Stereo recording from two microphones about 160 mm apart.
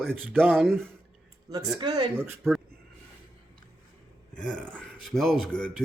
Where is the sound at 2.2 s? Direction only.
15° right (ahead or behind).